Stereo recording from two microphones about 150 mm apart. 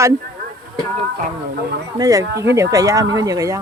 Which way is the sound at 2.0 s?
20° right (ahead or behind).